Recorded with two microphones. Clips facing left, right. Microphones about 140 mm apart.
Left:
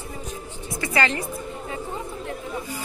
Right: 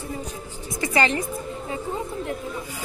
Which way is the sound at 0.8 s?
20° right (ahead or behind).